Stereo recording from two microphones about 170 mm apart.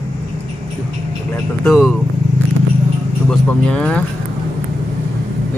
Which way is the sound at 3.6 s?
5° left (ahead or behind).